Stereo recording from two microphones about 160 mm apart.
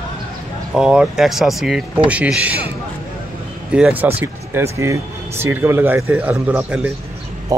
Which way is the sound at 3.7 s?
10° right (ahead or behind).